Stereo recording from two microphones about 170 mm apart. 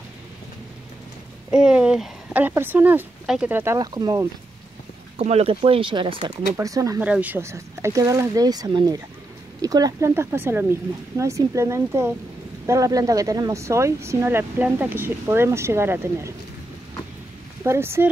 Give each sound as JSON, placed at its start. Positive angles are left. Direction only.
{"t": 1.5, "sound": "speech", "side_deg": -5}
{"t": 5.1, "sound": "speech", "side_deg": -40}
{"t": 6.5, "sound": "speech", "side_deg": -20}
{"t": 7.0, "sound": "speech", "side_deg": -10}
{"t": 17.6, "sound": "speech", "side_deg": -15}